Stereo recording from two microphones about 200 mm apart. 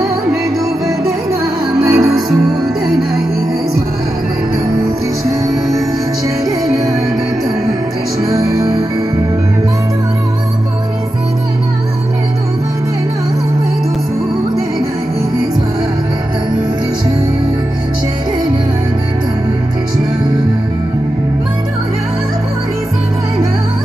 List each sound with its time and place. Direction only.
1.6 s music: 5° right (ahead or behind)
6.6 s music: centre (ahead or behind)
8.3 s music: 15° right (ahead or behind)